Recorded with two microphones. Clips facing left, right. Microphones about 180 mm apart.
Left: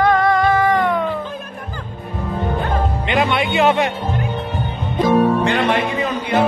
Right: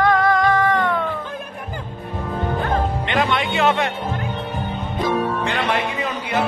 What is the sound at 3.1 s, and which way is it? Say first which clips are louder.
Speech: left 4 dB; 15° left (ahead or behind).